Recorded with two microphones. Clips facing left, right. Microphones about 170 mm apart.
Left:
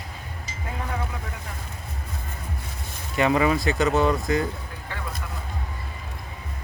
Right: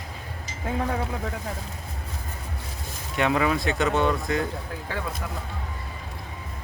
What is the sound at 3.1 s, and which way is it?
Speech, centre (ahead or behind).